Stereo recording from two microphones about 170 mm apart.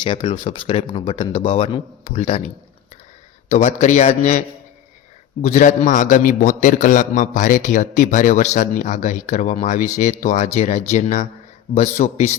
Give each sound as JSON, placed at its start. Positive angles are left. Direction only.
{"t": 0.0, "sound": "speech", "side_deg": 30}
{"t": 3.5, "sound": "a man's voice", "side_deg": 45}